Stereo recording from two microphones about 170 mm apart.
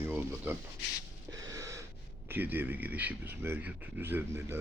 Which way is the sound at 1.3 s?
20° right (ahead or behind).